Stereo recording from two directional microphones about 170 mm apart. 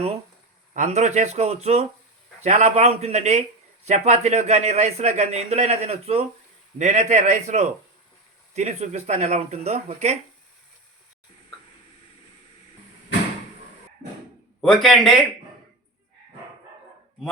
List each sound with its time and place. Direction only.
0.7 s a man's voice: 45° right (ahead or behind)
14.6 s a man's voice: centre (ahead or behind)